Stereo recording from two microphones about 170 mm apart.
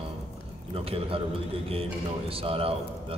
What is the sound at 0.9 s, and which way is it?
A man's voice, 35° right (ahead or behind).